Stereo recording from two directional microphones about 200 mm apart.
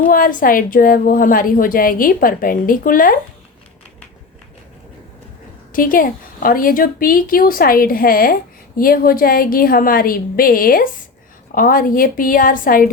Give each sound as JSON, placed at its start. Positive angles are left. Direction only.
{"t": 0.1, "sound": "a woman's voice", "side_deg": 45}
{"t": 5.7, "sound": "a woman's voice", "side_deg": 45}